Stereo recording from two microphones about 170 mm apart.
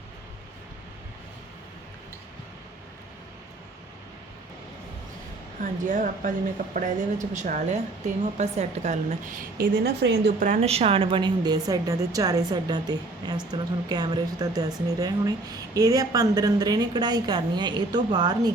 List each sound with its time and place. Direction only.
5.8 s a woman's voice: 50° right (ahead or behind)
10.6 s a woman's voice: 35° right (ahead or behind)